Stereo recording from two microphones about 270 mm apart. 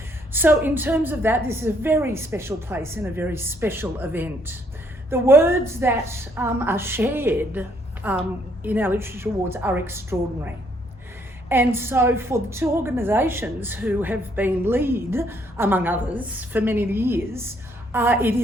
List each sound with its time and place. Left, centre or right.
0.3 s a woman's voice: centre